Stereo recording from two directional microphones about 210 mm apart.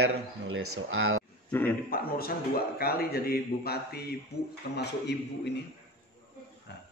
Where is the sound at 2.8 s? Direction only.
45° left (ahead or behind).